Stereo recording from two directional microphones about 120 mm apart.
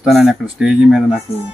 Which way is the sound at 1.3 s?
55° left (ahead or behind).